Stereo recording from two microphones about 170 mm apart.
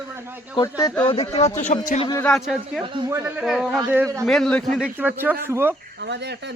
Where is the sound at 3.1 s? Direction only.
15° right (ahead or behind).